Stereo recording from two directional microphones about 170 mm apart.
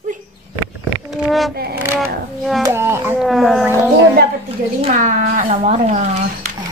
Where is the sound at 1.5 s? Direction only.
65° right (ahead or behind).